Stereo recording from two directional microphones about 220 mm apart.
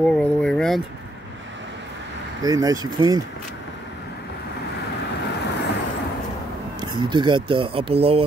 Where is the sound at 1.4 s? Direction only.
55° right (ahead or behind).